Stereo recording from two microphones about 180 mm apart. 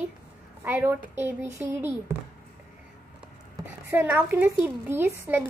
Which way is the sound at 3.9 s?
10° right (ahead or behind).